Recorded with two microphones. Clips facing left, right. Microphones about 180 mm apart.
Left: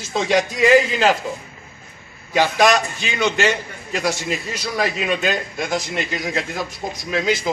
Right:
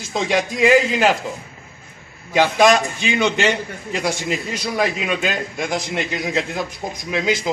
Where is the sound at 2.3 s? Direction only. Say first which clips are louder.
Right 2 dB; 15° right (ahead or behind).